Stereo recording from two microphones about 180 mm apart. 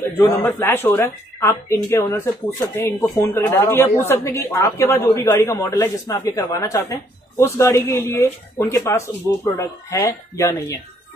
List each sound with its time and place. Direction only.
0.5 s speech: 10° left (ahead or behind)